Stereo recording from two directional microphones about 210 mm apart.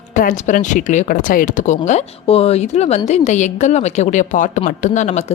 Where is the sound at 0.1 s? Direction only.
40° left (ahead or behind).